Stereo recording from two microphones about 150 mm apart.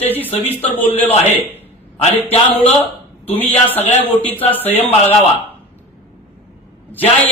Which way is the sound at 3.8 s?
45° left (ahead or behind).